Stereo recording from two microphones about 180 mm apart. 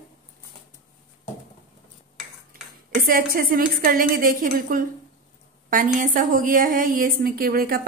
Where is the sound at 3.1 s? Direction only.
55° right (ahead or behind).